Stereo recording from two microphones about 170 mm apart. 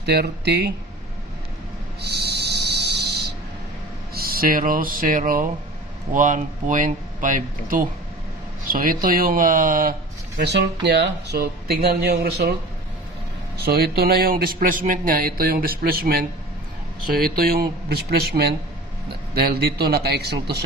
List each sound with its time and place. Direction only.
0.0 s speech: 75° right (ahead or behind)
2.0 s a sound: 75° right (ahead or behind)
4.1 s speech: 60° right (ahead or behind)
10.4 s speech: 80° right
13.6 s speech: 65° right (ahead or behind)